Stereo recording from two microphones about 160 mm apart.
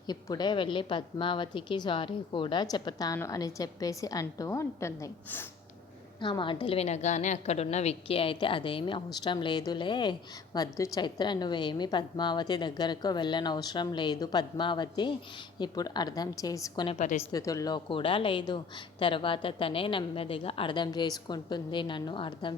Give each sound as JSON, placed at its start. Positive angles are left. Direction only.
{"t": 0.1, "sound": "a woman's voice", "side_deg": 25}
{"t": 6.1, "sound": "a woman's voice", "side_deg": 30}